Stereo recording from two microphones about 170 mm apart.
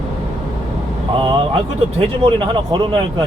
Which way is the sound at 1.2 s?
30° right (ahead or behind).